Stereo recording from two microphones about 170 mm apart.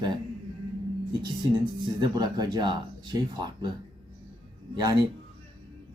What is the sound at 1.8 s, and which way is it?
Speech, 25° right (ahead or behind).